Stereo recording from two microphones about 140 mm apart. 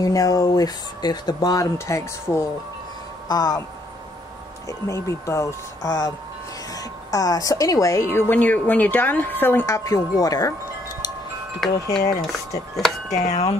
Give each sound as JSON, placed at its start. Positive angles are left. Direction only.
{"t": 0.0, "sound": "a woman's voice", "side_deg": 25}
{"t": 4.6, "sound": "a woman's voice", "side_deg": 20}
{"t": 11.6, "sound": "speech", "side_deg": 5}
{"t": 12.0, "sound": "a woman's voice", "side_deg": 30}
{"t": 12.3, "sound": "speech", "side_deg": 0}
{"t": 13.3, "sound": "wind chime", "side_deg": 50}